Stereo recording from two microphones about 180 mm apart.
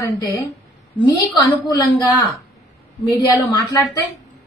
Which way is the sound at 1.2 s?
20° left (ahead or behind).